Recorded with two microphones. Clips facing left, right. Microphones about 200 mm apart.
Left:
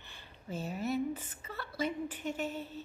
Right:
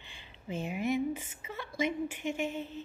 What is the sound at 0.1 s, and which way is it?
A woman's voice, 15° right (ahead or behind).